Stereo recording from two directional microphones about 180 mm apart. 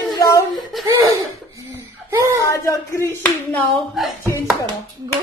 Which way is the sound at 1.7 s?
15° right (ahead or behind).